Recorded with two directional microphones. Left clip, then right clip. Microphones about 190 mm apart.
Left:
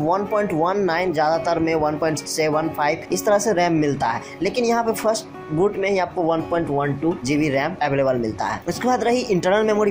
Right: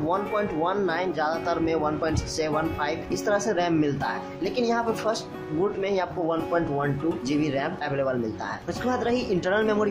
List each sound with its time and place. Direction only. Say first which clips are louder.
0.1 s speech: left 5 dB; 15° left (ahead or behind)